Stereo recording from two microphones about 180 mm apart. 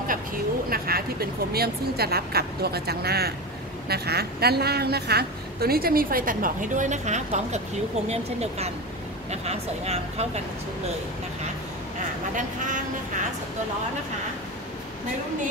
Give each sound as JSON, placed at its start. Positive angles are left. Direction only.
{"t": 0.7, "sound": "a woman's voice", "side_deg": -55}